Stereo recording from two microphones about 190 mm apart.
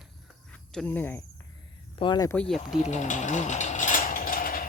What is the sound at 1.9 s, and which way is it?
Speech, 20° left (ahead or behind).